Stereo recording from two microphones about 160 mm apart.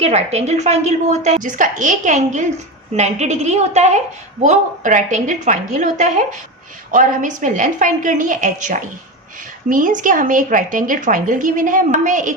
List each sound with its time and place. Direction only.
0.0 s a woman's voice: 40° right (ahead or behind)